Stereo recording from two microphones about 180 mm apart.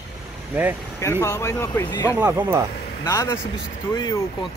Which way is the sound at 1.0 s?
15° left (ahead or behind).